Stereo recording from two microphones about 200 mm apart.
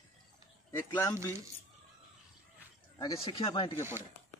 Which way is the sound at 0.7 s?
10° left (ahead or behind).